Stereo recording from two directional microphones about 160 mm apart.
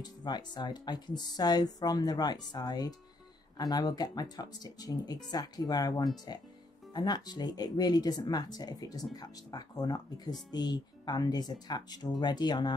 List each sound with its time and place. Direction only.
0.0 s speech: 25° left (ahead or behind)